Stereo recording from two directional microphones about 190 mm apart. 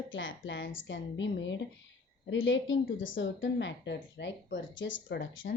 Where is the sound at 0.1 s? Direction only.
80° left.